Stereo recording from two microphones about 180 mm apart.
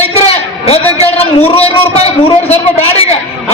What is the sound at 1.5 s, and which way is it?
A man's voice, 35° left (ahead or behind).